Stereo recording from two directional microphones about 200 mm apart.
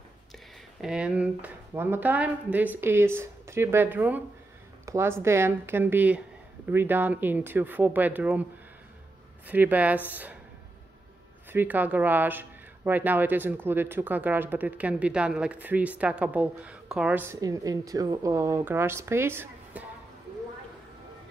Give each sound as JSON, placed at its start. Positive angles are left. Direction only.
{"t": 0.7, "sound": "speech", "side_deg": -5}
{"t": 9.5, "sound": "speech", "side_deg": -10}
{"t": 11.5, "sound": "speech", "side_deg": -10}